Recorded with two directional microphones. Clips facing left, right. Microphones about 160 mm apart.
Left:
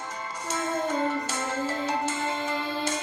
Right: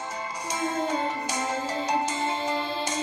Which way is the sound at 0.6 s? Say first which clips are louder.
Even; 10° right (ahead or behind).